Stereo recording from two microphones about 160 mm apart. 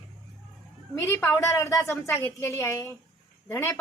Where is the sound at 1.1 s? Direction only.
15° left (ahead or behind).